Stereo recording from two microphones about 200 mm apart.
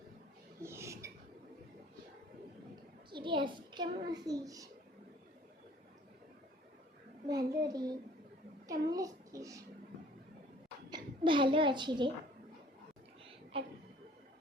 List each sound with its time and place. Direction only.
0.6 s a sound: 15° right (ahead or behind)
3.1 s a child's voice: 25° right (ahead or behind)
7.3 s a child's voice: 20° right (ahead or behind)
8.9 s a sound: 15° right (ahead or behind)
10.8 s a child's voice: 20° right (ahead or behind)
13.5 s a child's voice: 25° right (ahead or behind)